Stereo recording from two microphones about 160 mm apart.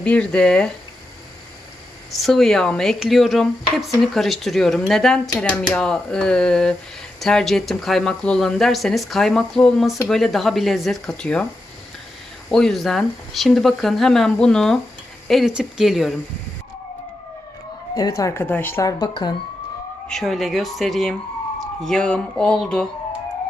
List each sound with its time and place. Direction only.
0.0 s speech: 5° left (ahead or behind)
2.1 s speech: centre (ahead or behind)
12.5 s speech: 5° left (ahead or behind)
18.2 s speech: 15° left (ahead or behind)
20.1 s speech: centre (ahead or behind)